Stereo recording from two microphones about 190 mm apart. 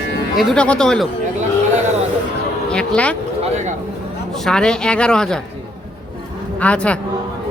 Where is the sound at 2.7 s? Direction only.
5° left (ahead or behind).